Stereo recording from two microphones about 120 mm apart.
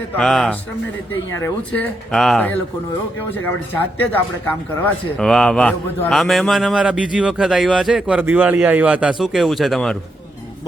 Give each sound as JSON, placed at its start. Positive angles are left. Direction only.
{"t": 0.2, "sound": "a man's voice", "side_deg": 5}
{"t": 1.7, "sound": "a man's voice", "side_deg": 5}
{"t": 3.3, "sound": "a man's voice", "side_deg": 15}